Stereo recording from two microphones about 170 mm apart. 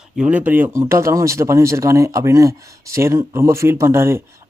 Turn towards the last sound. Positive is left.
turn(degrees=-15)  # may be behind; listen again after turning